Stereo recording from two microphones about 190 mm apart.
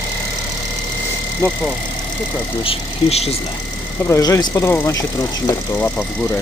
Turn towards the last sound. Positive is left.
turn(degrees=10)  # may be behind; listen again after turning